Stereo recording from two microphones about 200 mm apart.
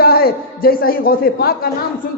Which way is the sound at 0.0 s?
50° left (ahead or behind).